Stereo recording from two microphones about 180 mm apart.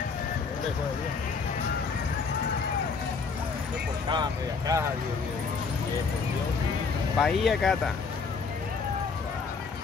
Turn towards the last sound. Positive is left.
turn(degrees=0)  # may be behind; listen again after turning